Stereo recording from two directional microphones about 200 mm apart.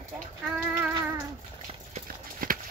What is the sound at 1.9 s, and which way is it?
Clip-clop, 45° right (ahead or behind).